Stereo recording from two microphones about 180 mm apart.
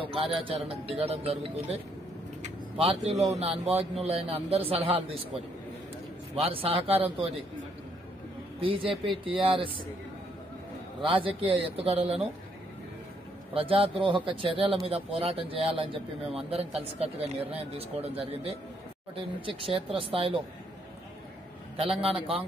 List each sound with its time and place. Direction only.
0.0 s speech: 30° right (ahead or behind)
2.8 s speech: 35° right (ahead or behind)
6.4 s speech: 30° right (ahead or behind)
8.5 s a man's voice: 30° right (ahead or behind)
11.0 s speech: 30° right (ahead or behind)
13.5 s speech: 30° right (ahead or behind)
21.8 s a man's voice: centre (ahead or behind)